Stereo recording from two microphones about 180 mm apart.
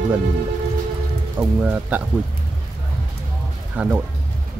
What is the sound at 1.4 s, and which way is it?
Speech, 10° right (ahead or behind).